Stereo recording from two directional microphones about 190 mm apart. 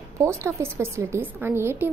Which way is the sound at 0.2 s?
15° right (ahead or behind).